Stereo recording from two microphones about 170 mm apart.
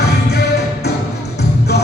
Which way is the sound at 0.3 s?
75° left (ahead or behind).